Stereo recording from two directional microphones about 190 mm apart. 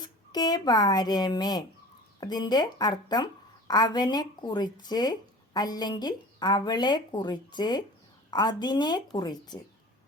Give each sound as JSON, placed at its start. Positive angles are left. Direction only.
{"t": 0.0, "sound": "a woman's voice", "side_deg": 20}